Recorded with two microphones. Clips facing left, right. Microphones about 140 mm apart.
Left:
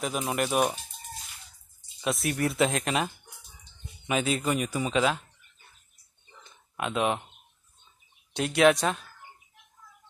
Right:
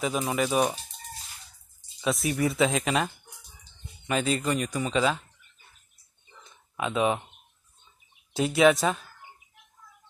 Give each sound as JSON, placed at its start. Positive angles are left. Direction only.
{"t": 0.0, "sound": "speech", "side_deg": 0}
{"t": 2.0, "sound": "speech", "side_deg": 0}
{"t": 4.1, "sound": "speech", "side_deg": 5}
{"t": 6.4, "sound": "a sound", "side_deg": 0}
{"t": 8.3, "sound": "speech", "side_deg": 0}